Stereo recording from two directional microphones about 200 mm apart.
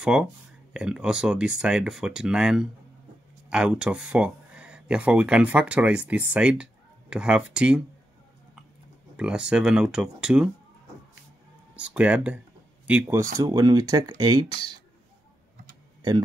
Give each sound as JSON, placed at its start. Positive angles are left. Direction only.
{"t": 0.0, "sound": "speech", "side_deg": -5}
{"t": 9.1, "sound": "speech", "side_deg": -5}
{"t": 11.7, "sound": "speech", "side_deg": -5}